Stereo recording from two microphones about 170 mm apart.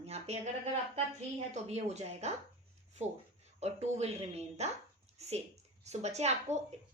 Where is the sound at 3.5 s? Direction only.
40° right (ahead or behind).